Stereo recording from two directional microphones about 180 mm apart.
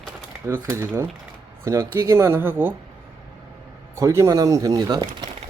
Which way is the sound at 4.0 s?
15° right (ahead or behind).